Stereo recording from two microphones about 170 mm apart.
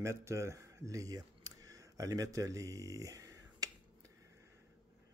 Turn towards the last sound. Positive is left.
turn(degrees=-20)  # may be behind; listen again after turning